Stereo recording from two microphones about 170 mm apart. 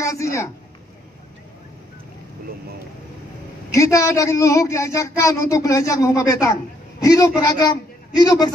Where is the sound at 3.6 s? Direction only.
20° left (ahead or behind).